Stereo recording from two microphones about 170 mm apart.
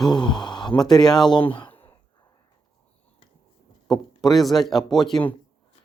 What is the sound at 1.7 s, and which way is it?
Sigh, 10° left (ahead or behind).